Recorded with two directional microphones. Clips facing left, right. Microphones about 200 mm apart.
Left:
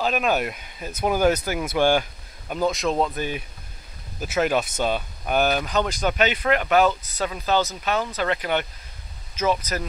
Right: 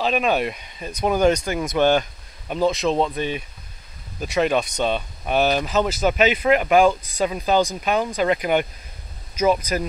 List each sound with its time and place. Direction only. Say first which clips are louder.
0.0 s speech: right 2 dB; centre (ahead or behind)